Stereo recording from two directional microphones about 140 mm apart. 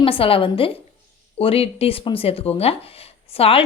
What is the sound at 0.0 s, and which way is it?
A woman's voice, 40° left (ahead or behind).